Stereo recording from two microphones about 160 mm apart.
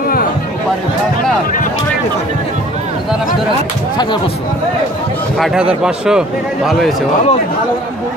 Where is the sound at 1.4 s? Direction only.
60° left (ahead or behind).